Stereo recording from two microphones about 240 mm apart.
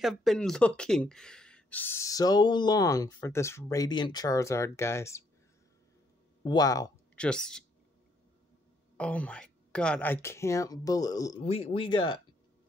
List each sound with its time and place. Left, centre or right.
0.0 s speech: centre
6.4 s speech: centre
7.2 s speech: centre
8.9 s speech: centre